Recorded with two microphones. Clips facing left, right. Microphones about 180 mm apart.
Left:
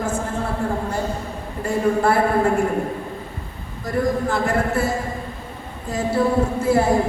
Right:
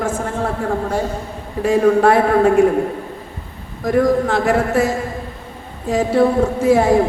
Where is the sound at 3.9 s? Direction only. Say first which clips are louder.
Right 6 dB; 90° right.